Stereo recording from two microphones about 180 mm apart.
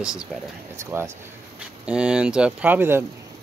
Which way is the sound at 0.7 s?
15° right (ahead or behind).